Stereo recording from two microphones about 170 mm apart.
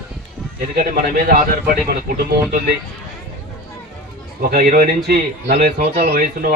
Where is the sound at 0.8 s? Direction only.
60° right (ahead or behind).